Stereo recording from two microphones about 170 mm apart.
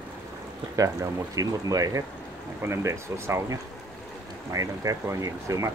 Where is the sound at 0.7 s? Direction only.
20° right (ahead or behind).